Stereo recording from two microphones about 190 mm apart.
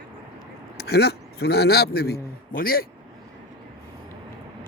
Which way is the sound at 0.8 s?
60° left (ahead or behind).